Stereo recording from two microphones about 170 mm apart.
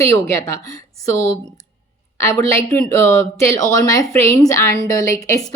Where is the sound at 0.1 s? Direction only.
20° left (ahead or behind).